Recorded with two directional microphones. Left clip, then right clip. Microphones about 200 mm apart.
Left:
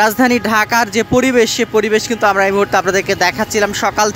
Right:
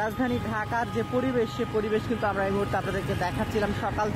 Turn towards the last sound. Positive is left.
turn(degrees=20)  # may be behind; listen again after turning